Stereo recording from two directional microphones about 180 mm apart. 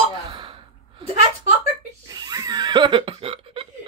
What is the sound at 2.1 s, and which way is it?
Speech, 20° right (ahead or behind).